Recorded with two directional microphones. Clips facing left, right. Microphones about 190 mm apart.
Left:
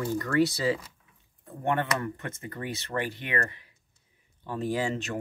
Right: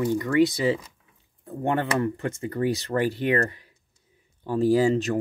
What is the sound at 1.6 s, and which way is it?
Speech, 30° right (ahead or behind).